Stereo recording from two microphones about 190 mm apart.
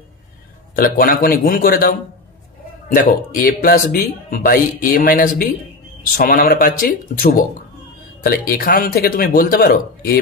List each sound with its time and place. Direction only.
0.7 s speech: 50° left (ahead or behind)